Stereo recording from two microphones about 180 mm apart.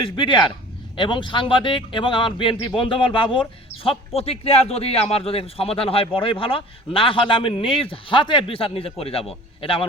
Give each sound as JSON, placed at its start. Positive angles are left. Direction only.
{"t": 0.2, "sound": "a man's voice", "side_deg": 25}